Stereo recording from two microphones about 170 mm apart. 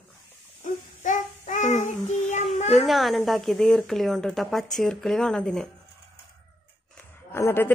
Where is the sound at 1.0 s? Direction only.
50° left (ahead or behind).